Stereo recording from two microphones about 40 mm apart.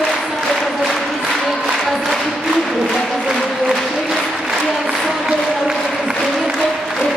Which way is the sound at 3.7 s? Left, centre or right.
Centre.